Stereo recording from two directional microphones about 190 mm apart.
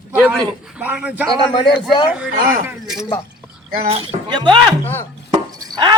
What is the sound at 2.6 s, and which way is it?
Speech, centre (ahead or behind).